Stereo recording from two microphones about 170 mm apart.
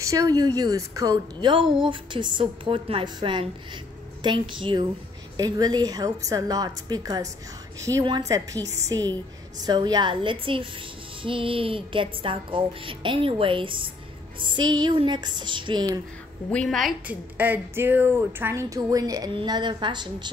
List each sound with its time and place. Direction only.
0.0 s speech: 20° right (ahead or behind)
16.4 s a woman's voice: 5° left (ahead or behind)
17.4 s speech: 10° right (ahead or behind); by 20.2 s 25° right (ahead or behind)